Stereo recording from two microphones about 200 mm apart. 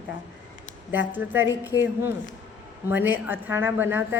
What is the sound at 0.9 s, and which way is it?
Speech, 10° right (ahead or behind).